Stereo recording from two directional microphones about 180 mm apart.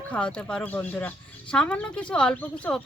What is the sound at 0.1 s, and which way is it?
Speech, 5° left (ahead or behind).